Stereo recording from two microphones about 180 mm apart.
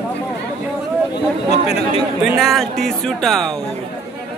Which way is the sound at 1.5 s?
35° left (ahead or behind).